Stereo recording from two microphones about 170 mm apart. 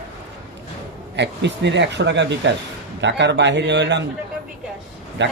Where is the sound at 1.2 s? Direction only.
90° right.